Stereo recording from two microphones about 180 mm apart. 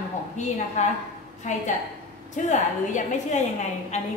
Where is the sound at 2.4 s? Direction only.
40° left (ahead or behind).